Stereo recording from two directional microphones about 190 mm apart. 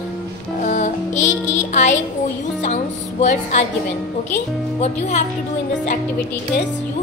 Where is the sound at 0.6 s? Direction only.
40° left (ahead or behind).